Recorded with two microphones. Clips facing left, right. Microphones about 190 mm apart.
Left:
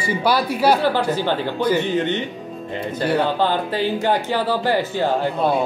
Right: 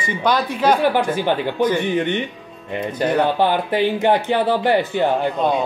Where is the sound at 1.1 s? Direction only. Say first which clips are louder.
Right 1 dB; 15° right (ahead or behind).